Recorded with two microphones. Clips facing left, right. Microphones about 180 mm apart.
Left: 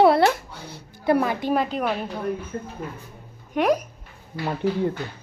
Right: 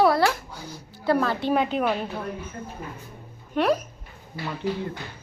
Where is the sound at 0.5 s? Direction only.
65° left (ahead or behind).